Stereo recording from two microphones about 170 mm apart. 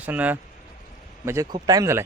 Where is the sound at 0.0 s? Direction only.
10° right (ahead or behind).